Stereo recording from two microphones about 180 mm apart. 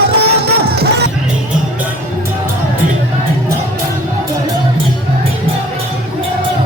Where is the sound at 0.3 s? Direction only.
60° right (ahead or behind).